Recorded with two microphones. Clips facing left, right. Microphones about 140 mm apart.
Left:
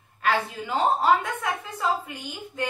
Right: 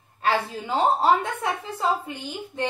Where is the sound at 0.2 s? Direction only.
30° right (ahead or behind).